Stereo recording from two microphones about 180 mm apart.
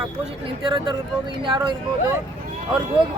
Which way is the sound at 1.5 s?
25° right (ahead or behind).